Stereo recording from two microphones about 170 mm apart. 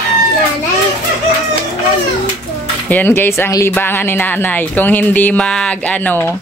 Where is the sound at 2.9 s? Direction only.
10° left (ahead or behind).